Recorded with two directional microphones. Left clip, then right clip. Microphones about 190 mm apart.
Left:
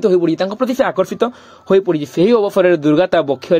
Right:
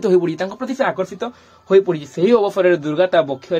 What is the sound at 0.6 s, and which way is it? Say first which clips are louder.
Speech: left 4 dB; 45° left (ahead or behind).